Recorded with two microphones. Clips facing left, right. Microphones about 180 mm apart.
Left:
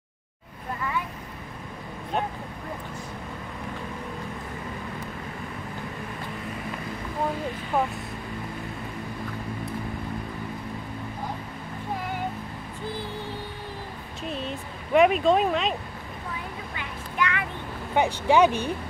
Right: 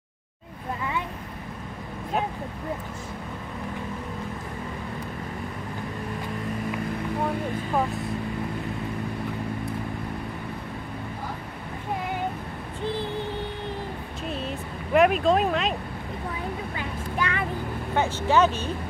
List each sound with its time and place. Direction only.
14.3 s vehicle: centre (ahead or behind)
16.7 s a sound: 35° right (ahead or behind)
17.9 s speech: 15° left (ahead or behind)